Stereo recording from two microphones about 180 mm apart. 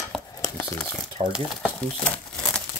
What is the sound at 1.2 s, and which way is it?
Speech, 30° right (ahead or behind).